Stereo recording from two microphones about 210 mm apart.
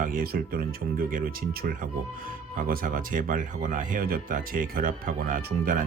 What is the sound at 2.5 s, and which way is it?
Speech, 40° right (ahead or behind).